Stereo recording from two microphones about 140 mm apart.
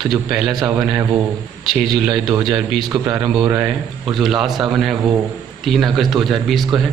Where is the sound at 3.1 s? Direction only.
15° right (ahead or behind).